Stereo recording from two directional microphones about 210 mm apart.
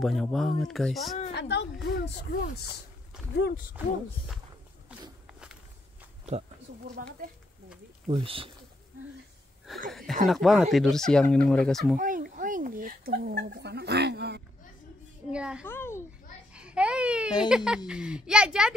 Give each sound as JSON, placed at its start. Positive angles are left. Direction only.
{"t": 0.0, "sound": "speech", "side_deg": 0}
{"t": 1.3, "sound": "a woman's voice", "side_deg": 55}
{"t": 3.3, "sound": "speech", "side_deg": 50}
{"t": 5.2, "sound": "walk", "side_deg": -5}
{"t": 8.1, "sound": "speech", "side_deg": -25}
{"t": 9.8, "sound": "a sound", "side_deg": 0}
{"t": 10.2, "sound": "speech", "side_deg": 0}
{"t": 12.0, "sound": "speech", "side_deg": -40}
{"t": 15.3, "sound": "speech", "side_deg": -5}
{"t": 15.6, "sound": "a child's voice", "side_deg": 10}
{"t": 16.5, "sound": "speech", "side_deg": -5}